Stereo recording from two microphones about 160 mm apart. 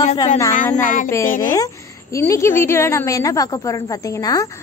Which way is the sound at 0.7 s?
55° left (ahead or behind).